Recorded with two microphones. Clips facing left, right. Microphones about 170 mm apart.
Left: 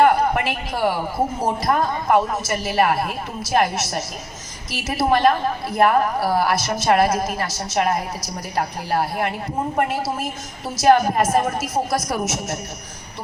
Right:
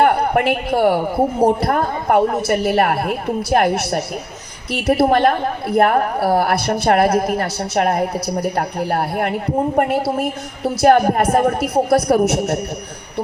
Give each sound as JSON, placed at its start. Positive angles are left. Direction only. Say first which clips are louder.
{"t": 0.0, "sound": "a woman's voice", "louder": "right 2 dB", "side_deg": -60}